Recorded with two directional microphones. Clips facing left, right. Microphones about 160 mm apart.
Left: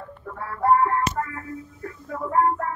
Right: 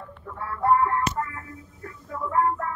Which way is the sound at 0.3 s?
35° left (ahead or behind).